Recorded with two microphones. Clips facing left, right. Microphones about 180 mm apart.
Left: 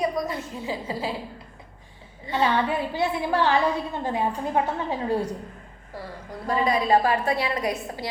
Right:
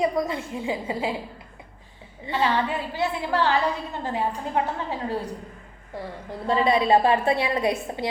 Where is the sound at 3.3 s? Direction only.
15° left (ahead or behind).